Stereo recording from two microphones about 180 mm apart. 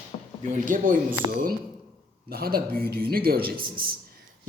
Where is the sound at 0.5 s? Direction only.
45° right (ahead or behind).